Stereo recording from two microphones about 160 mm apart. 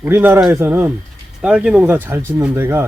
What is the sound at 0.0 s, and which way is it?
Speech, 15° right (ahead or behind).